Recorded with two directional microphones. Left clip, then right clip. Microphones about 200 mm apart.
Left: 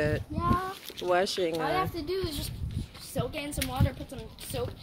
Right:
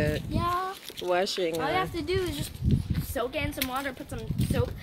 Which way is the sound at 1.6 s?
35° right (ahead or behind).